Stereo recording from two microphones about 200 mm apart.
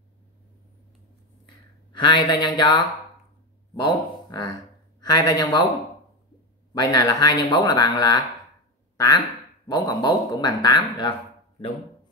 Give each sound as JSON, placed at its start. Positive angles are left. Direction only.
{"t": 1.9, "sound": "speech", "side_deg": 20}
{"t": 3.8, "sound": "speech", "side_deg": 20}
{"t": 6.7, "sound": "speech", "side_deg": 20}
{"t": 8.9, "sound": "quack", "side_deg": 20}
{"t": 9.7, "sound": "speech", "side_deg": 20}